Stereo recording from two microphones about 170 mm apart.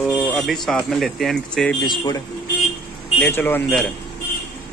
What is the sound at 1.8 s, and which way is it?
Speech, 25° left (ahead or behind).